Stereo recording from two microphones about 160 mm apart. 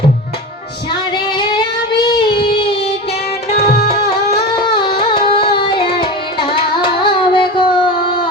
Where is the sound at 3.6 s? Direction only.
75° left (ahead or behind).